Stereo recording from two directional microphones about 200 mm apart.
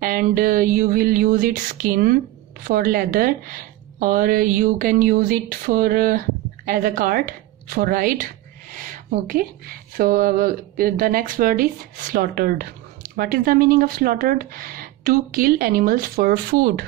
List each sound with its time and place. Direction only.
0.0 s speech: 45° right (ahead or behind)